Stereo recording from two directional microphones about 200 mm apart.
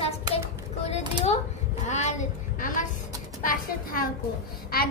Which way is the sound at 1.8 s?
35° left (ahead or behind).